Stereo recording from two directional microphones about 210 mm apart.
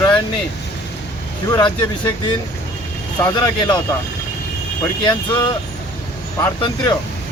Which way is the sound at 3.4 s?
20° left (ahead or behind).